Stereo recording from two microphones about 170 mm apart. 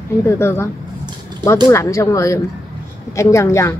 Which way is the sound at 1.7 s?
15° left (ahead or behind).